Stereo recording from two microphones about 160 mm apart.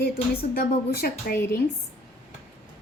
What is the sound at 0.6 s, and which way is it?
Speech, 75° left (ahead or behind).